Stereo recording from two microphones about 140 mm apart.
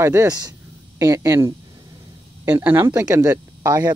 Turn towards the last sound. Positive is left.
turn(degrees=-25)  # may be behind; listen again after turning